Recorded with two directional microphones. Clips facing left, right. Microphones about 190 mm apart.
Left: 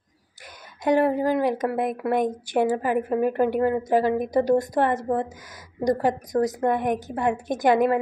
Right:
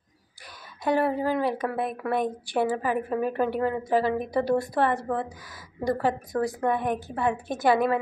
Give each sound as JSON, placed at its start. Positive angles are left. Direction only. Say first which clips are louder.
{"t": 0.8, "sound": "a woman's voice", "louder": "left 4 dB", "side_deg": 15}